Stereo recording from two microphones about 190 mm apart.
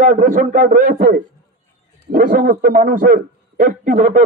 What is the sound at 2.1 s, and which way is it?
A man's voice, 50° right (ahead or behind).